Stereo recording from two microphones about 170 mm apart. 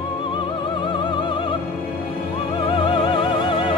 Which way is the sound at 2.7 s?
30° left (ahead or behind).